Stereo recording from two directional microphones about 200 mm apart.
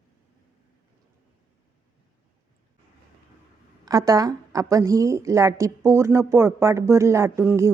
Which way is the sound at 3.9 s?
15° right (ahead or behind).